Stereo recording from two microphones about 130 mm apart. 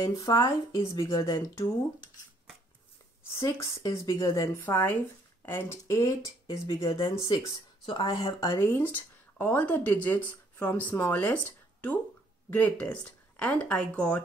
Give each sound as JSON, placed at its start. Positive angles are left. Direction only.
{"t": 0.0, "sound": "speech", "side_deg": 25}
{"t": 3.3, "sound": "speech", "side_deg": 25}
{"t": 6.9, "sound": "speech", "side_deg": 40}
{"t": 8.4, "sound": "speech", "side_deg": 20}